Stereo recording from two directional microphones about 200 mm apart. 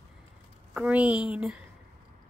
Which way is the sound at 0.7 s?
5° right (ahead or behind).